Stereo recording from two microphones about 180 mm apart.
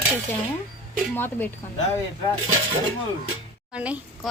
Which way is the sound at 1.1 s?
10° left (ahead or behind).